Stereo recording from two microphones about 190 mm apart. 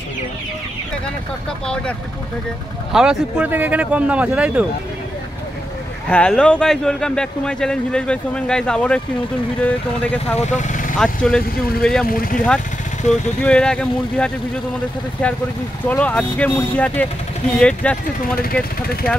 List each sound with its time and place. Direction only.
2.9 s speech: 5° right (ahead or behind)
6.0 s speech: 5° left (ahead or behind)
10.3 s speech: 40° left (ahead or behind)
11.0 s speech: 5° left (ahead or behind)
12.1 s speech: 50° left (ahead or behind)
13.4 s speech: 5° left (ahead or behind)
15.9 s speech: 5° left (ahead or behind)
18.4 s speech: 50° left (ahead or behind)